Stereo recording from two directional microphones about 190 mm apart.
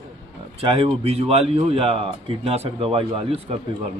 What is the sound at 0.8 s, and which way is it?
A man's voice, 30° right (ahead or behind).